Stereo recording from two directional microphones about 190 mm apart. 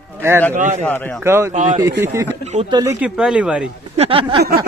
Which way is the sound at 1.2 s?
15° right (ahead or behind).